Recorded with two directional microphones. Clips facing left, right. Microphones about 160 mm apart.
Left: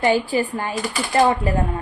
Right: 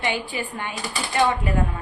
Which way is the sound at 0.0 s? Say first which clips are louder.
Left 8 dB; 40° left (ahead or behind).